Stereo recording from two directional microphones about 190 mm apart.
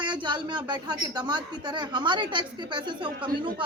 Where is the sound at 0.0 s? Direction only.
25° right (ahead or behind).